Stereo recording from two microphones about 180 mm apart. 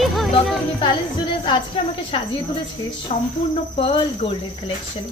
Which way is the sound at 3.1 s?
35° left (ahead or behind).